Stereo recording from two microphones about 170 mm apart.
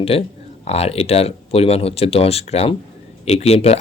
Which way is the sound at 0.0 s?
35° left (ahead or behind).